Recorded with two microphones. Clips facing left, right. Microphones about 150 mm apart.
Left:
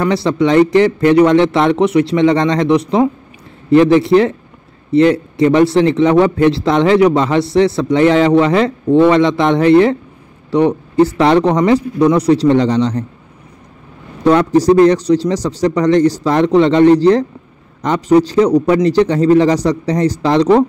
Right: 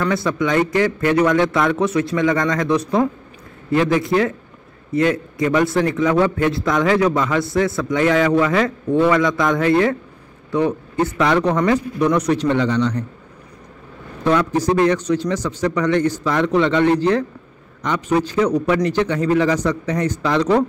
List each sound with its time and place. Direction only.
0.0 s a man's voice: 25° left (ahead or behind)
11.1 s a man's voice: 30° left (ahead or behind)
14.2 s a man's voice: 40° left (ahead or behind)